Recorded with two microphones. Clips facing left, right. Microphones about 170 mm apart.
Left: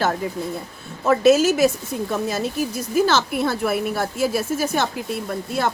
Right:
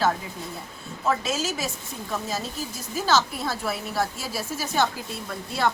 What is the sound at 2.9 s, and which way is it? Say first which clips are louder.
A woman's voice: left 4 dB; 60° left (ahead or behind).